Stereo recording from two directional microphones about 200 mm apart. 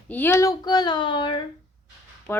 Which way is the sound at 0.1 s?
10° left (ahead or behind).